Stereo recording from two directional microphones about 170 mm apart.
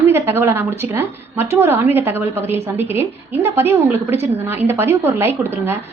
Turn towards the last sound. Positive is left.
turn(degrees=-10)  # may be behind; listen again after turning